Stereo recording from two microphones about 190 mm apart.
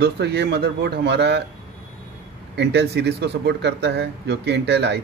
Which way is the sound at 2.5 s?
65° right (ahead or behind).